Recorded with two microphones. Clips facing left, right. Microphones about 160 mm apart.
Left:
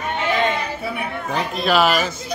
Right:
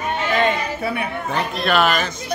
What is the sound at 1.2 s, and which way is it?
Speech, centre (ahead or behind).